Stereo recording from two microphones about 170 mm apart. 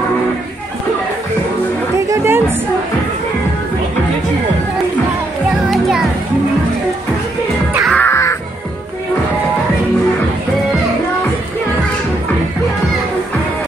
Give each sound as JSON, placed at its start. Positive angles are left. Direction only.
{"t": 2.0, "sound": "chatter", "side_deg": -15}
{"t": 5.7, "sound": "music", "side_deg": 0}
{"t": 7.9, "sound": "music", "side_deg": 15}